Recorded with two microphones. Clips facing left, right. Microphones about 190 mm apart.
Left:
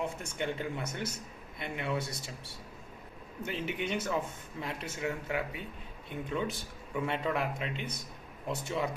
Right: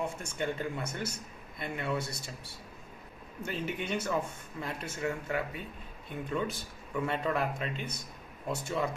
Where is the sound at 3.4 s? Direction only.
15° left (ahead or behind).